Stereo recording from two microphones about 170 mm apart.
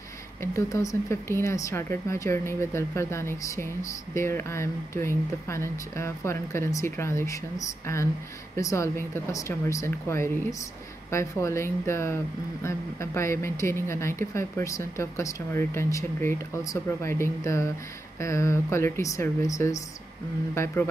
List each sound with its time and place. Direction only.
0.4 s speech: 15° left (ahead or behind)